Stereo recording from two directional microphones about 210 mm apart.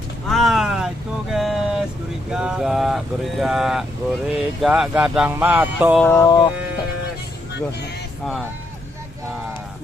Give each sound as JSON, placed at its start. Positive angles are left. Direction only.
{"t": 0.3, "sound": "a sound", "side_deg": 0}
{"t": 2.3, "sound": "speech", "side_deg": -5}
{"t": 6.0, "sound": "fowl", "side_deg": 15}